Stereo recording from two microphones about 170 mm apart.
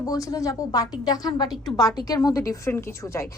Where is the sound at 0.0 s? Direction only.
20° left (ahead or behind).